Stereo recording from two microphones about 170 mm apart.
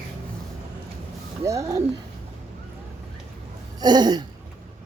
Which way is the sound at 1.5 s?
20° right (ahead or behind).